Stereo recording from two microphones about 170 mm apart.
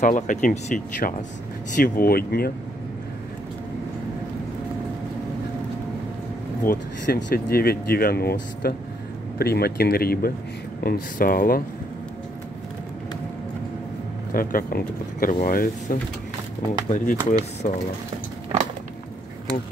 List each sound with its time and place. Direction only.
0.0 s speech: 50° left (ahead or behind)
6.6 s speech: 60° left (ahead or behind)
14.3 s speech: 55° left (ahead or behind)